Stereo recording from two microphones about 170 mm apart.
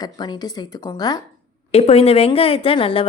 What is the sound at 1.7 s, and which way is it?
A woman's voice, 35° left (ahead or behind).